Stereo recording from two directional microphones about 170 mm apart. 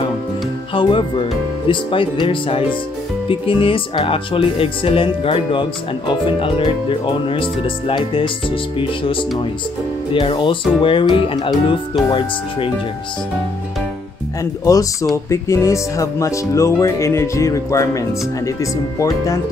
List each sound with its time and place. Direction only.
0.7 s speech: 30° left (ahead or behind)
10.1 s speech: 30° left (ahead or behind)
14.4 s speech: 20° left (ahead or behind)